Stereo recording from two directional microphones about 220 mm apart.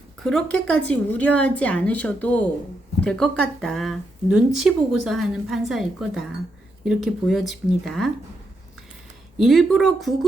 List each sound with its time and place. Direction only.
0.2 s speech: centre (ahead or behind)
9.4 s speech: centre (ahead or behind)